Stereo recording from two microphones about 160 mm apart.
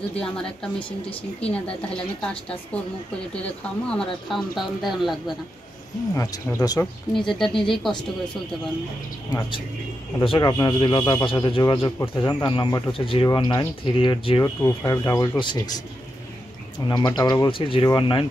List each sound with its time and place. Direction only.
0.1 s speech: 5° left (ahead or behind)
3.4 s speech: 5° left (ahead or behind)
6.1 s speech: 25° left (ahead or behind)
7.2 s speech: centre (ahead or behind)
9.3 s speech: 25° left (ahead or behind)
12.0 s speech: 20° left (ahead or behind)
14.6 s speech: 20° left (ahead or behind)